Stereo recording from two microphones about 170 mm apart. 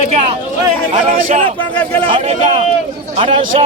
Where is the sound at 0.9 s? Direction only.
40° right (ahead or behind).